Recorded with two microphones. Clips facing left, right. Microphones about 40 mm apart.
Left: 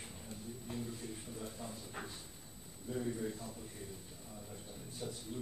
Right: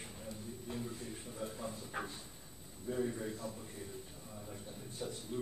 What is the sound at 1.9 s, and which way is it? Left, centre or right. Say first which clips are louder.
Drawer open or close: right 5 dB; right.